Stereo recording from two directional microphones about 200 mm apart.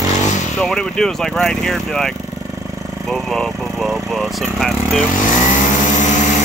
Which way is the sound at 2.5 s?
15° right (ahead or behind).